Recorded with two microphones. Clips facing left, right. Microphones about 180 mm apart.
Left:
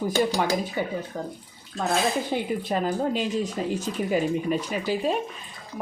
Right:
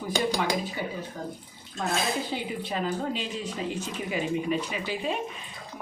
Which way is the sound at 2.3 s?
45° left (ahead or behind).